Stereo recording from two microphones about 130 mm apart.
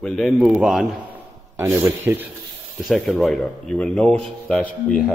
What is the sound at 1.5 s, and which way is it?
Speech, 20° right (ahead or behind).